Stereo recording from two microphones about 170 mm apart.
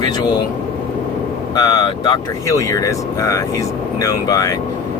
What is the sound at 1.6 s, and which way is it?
Speech, 20° left (ahead or behind).